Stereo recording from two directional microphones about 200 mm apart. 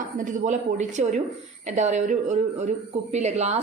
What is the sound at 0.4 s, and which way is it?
A woman's voice, 35° right (ahead or behind).